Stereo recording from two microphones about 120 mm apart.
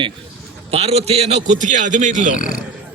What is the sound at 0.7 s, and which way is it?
A man's voice, 60° right (ahead or behind).